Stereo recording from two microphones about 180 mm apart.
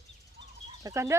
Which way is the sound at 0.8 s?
15° right (ahead or behind).